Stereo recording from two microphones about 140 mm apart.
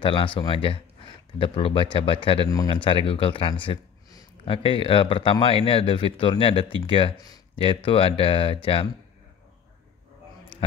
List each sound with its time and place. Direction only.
0.0 s speech: 35° left (ahead or behind)